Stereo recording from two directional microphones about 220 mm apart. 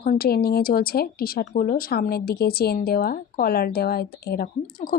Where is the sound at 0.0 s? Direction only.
40° left (ahead or behind).